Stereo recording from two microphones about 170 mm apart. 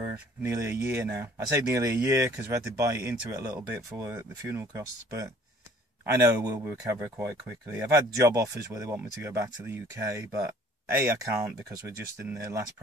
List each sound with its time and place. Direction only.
0.4 s speech: 15° right (ahead or behind)
12.4 s speech: 15° right (ahead or behind)